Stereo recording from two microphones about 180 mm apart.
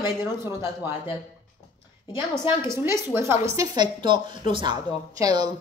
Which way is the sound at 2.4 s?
25° left (ahead or behind).